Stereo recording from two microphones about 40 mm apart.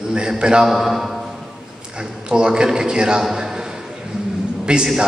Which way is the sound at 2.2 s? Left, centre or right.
Right.